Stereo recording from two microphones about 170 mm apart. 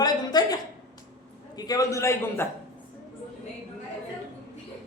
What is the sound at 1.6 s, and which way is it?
Speech, 20° left (ahead or behind).